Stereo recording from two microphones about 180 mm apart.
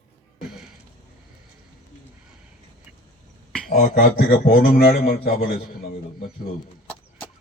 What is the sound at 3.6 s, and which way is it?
A woman's voice, 50° left (ahead or behind).